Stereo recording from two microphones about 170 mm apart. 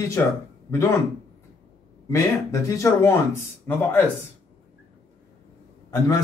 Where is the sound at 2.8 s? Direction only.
15° left (ahead or behind).